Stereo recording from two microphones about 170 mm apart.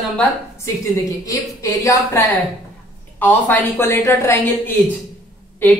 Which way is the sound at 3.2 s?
10° left (ahead or behind).